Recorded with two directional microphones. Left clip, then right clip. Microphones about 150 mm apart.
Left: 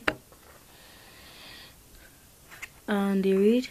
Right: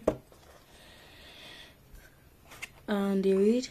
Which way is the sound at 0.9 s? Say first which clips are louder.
Left 1 dB; 25° left (ahead or behind).